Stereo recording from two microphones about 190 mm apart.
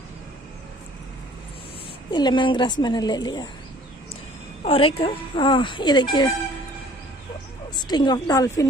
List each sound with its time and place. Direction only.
2.0 s speech: 25° left (ahead or behind)
4.6 s speech: 30° left (ahead or behind)
7.7 s speech: 20° left (ahead or behind)